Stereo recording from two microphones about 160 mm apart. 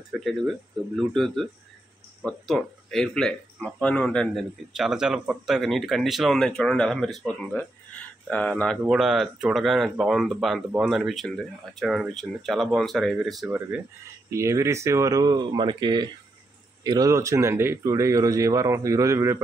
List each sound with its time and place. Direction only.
0.1 s speech: centre (ahead or behind)
14.3 s speech: 15° right (ahead or behind)